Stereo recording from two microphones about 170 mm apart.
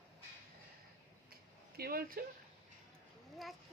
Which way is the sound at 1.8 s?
60° right (ahead or behind).